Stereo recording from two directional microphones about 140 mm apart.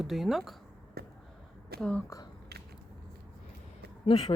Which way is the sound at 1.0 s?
90° right.